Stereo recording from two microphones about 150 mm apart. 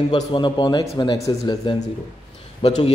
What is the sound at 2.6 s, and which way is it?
Speech, 40° left (ahead or behind).